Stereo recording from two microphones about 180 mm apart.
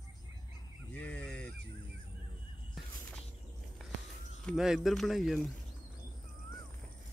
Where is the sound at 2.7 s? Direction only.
5° left (ahead or behind).